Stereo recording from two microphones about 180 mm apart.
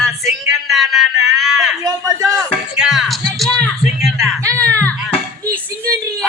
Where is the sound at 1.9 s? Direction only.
20° right (ahead or behind).